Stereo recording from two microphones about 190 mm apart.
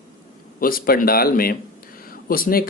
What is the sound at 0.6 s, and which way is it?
Speech, 50° left (ahead or behind).